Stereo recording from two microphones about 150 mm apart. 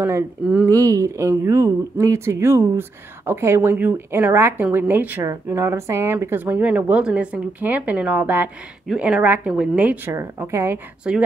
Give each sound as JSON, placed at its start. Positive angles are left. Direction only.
{"t": 0.0, "sound": "speech", "side_deg": -10}
{"t": 0.7, "sound": "speech", "side_deg": -20}